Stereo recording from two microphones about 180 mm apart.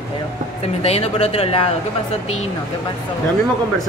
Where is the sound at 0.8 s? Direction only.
35° left (ahead or behind).